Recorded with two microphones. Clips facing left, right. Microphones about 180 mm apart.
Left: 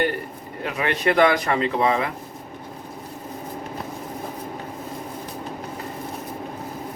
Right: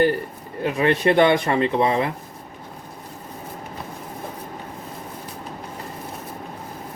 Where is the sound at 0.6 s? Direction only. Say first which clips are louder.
Right 5 dB; 30° right (ahead or behind).